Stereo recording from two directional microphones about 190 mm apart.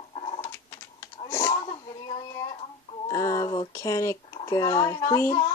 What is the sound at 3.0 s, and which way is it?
Speech, 15° left (ahead or behind).